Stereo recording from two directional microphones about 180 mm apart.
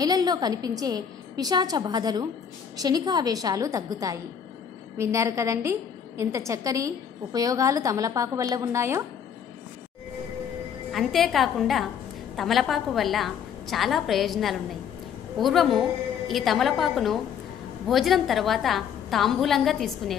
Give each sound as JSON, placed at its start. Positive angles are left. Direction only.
{"t": 0.0, "sound": "a woman's voice", "side_deg": -20}
{"t": 10.9, "sound": "a woman's voice", "side_deg": 0}